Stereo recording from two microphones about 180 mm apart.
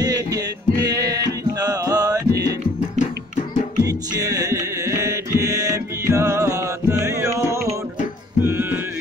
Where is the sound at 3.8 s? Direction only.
20° right (ahead or behind).